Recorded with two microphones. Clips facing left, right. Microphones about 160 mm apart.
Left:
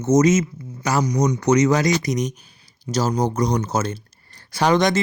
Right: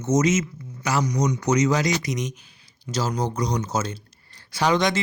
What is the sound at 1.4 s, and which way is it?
Speech, 55° left (ahead or behind).